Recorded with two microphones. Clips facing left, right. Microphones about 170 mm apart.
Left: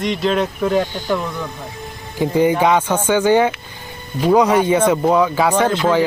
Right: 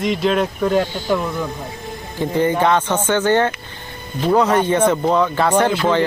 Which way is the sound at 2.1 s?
10° left (ahead or behind).